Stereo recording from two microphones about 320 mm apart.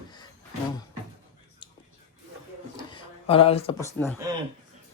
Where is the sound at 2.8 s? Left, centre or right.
Centre.